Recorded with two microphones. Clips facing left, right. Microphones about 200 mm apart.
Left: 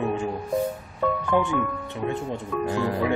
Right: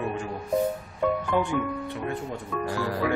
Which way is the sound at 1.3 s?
20° left (ahead or behind).